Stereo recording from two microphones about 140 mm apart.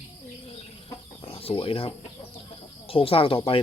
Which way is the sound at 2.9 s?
40° left (ahead or behind).